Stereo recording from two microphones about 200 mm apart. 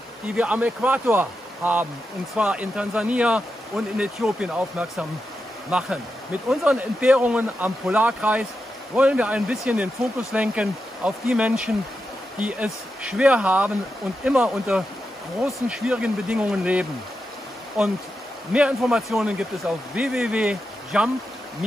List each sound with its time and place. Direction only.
0.3 s a man's voice: 5° right (ahead or behind)